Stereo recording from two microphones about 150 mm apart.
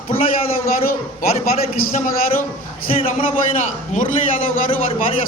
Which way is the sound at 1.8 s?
60° left (ahead or behind).